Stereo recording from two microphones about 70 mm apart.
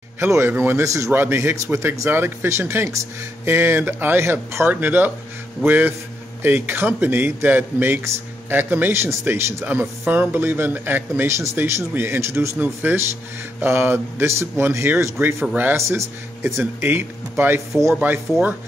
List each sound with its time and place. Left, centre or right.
0.2 s speech: right
0.8 s speech: right
1.1 s a man's voice: right
11.2 s speech: right